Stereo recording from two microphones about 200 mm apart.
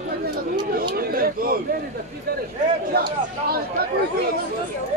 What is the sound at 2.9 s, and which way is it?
Speech, 50° right (ahead or behind).